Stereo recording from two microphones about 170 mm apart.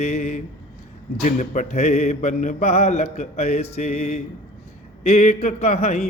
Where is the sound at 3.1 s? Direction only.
40° left (ahead or behind).